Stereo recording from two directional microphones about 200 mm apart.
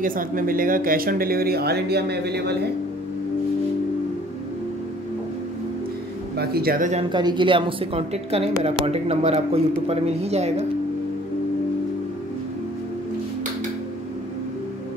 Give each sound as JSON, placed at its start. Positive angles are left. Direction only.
{"t": 0.0, "sound": "speech", "side_deg": -45}
{"t": 6.3, "sound": "speech", "side_deg": -50}
{"t": 7.1, "sound": "a woman's voice", "side_deg": -20}